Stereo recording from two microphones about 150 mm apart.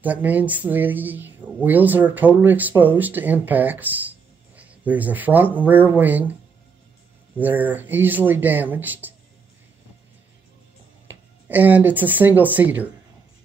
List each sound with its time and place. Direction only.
0.0 s speech: 10° right (ahead or behind)
7.3 s speech: 10° right (ahead or behind)
11.1 s speech: 10° right (ahead or behind)